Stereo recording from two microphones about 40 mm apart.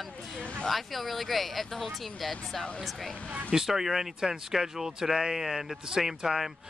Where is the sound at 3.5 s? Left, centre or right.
Centre.